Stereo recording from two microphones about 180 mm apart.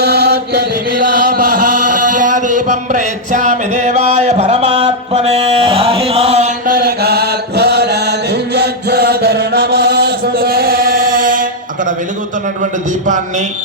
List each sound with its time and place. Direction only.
0.0 s chant: 60° right (ahead or behind)
1.0 s a sound: 50° right (ahead or behind); by 6.5 s 35° right (ahead or behind)
6.7 s chant: 55° right (ahead or behind)